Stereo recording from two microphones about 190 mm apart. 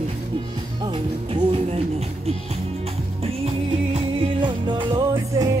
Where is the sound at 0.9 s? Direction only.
30° right (ahead or behind).